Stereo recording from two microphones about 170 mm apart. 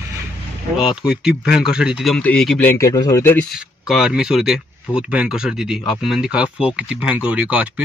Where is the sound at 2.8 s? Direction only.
20° left (ahead or behind).